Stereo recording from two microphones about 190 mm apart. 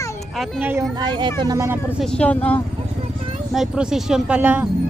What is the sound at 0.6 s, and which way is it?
Speech, 15° right (ahead or behind).